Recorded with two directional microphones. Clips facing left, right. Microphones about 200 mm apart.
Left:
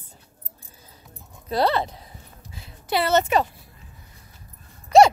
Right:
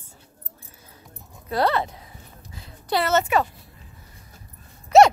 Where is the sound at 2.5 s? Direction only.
25° left (ahead or behind).